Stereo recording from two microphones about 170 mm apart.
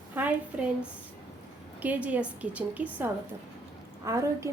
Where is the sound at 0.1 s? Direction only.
10° right (ahead or behind).